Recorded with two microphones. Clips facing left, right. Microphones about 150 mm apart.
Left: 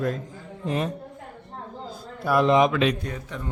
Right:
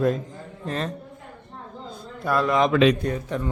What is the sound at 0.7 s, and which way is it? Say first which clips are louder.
Speech: left 2 dB; 15° left (ahead or behind).